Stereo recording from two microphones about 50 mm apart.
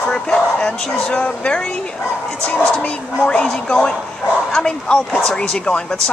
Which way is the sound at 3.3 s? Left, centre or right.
Centre.